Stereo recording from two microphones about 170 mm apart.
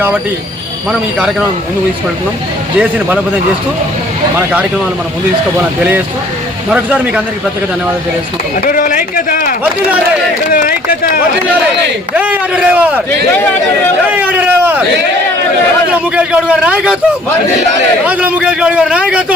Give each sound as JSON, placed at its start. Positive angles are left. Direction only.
{"t": 6.7, "sound": "speech", "side_deg": -5}
{"t": 8.6, "sound": "speech", "side_deg": 55}
{"t": 12.1, "sound": "a man's voice", "side_deg": -10}
{"t": 14.1, "sound": "a sound", "side_deg": -10}
{"t": 16.1, "sound": "a man's voice", "side_deg": -5}
{"t": 18.0, "sound": "a man's voice", "side_deg": -10}